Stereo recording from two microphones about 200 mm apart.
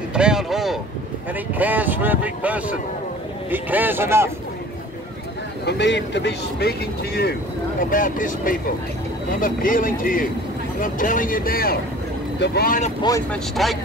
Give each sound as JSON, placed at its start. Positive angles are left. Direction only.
{"t": 0.1, "sound": "boat", "side_deg": -5}
{"t": 1.5, "sound": "speech", "side_deg": -10}
{"t": 5.7, "sound": "speech", "side_deg": 60}
{"t": 7.9, "sound": "speech", "side_deg": 45}
{"t": 13.3, "sound": "speech", "side_deg": 0}